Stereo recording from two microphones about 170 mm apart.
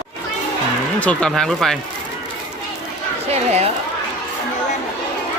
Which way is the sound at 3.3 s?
40° right (ahead or behind).